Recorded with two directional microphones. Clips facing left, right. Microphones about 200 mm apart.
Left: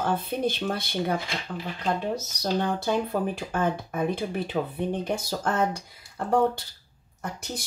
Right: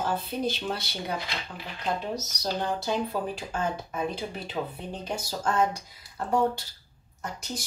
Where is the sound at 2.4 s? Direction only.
55° left (ahead or behind).